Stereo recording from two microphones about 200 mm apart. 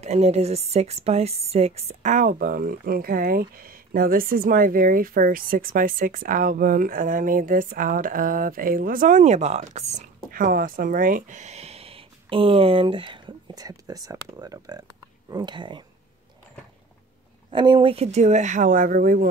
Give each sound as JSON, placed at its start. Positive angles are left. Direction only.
{"t": 0.0, "sound": "a woman's voice", "side_deg": -30}
{"t": 17.5, "sound": "speech", "side_deg": -25}